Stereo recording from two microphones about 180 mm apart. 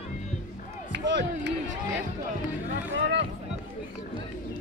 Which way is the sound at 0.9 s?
75° right (ahead or behind).